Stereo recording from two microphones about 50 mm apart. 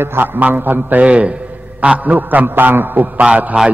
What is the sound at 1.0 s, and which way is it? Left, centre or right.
A man's voice, right.